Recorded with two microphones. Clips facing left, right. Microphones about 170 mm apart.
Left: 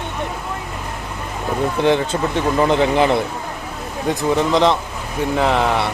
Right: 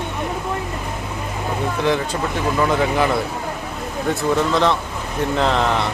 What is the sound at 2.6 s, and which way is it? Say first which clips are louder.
Speech: left 3 dB; 25° left (ahead or behind).